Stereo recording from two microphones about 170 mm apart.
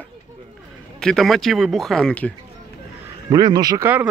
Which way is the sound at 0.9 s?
5° left (ahead or behind).